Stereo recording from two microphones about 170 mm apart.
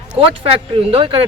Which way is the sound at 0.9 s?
35° right (ahead or behind).